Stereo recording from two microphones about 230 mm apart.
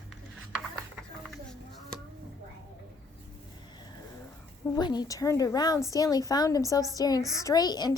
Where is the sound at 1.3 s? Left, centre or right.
Centre.